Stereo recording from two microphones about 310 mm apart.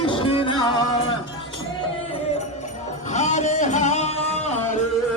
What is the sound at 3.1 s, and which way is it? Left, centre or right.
Music, left.